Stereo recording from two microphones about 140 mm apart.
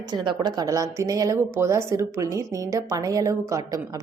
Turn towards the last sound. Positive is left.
turn(degrees=-25)  # may be behind; listen again after turning